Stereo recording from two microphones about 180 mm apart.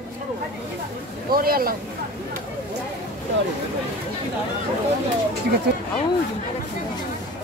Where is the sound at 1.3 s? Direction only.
55° right (ahead or behind).